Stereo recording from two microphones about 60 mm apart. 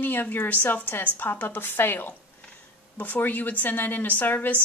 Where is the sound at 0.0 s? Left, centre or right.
Left.